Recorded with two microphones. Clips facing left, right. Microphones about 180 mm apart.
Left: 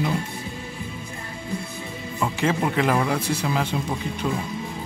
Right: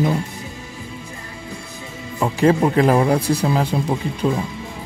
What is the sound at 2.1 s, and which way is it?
Speech, 35° right (ahead or behind).